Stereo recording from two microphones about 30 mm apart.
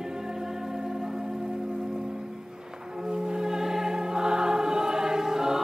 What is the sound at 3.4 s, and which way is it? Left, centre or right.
Choir, centre.